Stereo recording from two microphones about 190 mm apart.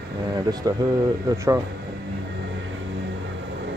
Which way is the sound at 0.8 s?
20° right (ahead or behind).